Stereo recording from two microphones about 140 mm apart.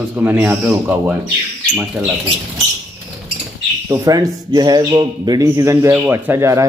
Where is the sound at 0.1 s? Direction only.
10° right (ahead or behind).